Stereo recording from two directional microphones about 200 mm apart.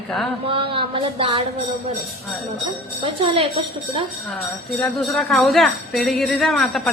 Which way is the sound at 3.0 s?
25° right (ahead or behind).